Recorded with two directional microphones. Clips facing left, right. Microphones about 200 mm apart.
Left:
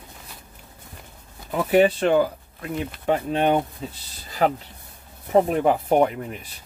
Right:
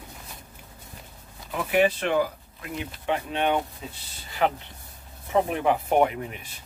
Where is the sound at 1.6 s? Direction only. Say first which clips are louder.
Left 5 dB; 40° left (ahead or behind).